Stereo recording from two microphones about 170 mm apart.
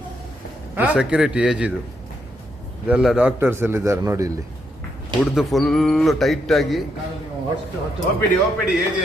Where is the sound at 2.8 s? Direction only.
5° right (ahead or behind).